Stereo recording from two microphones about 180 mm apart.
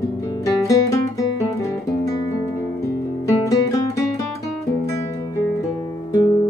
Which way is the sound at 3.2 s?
20° left (ahead or behind).